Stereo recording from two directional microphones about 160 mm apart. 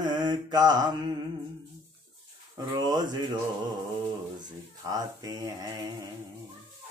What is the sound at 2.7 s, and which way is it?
Speech, 25° right (ahead or behind).